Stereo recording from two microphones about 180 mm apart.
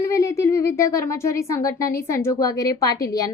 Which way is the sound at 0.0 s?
15° left (ahead or behind).